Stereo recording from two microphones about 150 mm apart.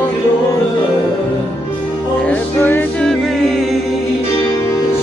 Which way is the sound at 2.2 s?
15° left (ahead or behind).